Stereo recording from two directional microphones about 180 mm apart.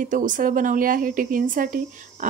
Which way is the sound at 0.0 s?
45° right (ahead or behind).